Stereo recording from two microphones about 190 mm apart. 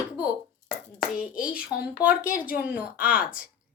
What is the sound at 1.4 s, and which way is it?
Speech, 5° right (ahead or behind).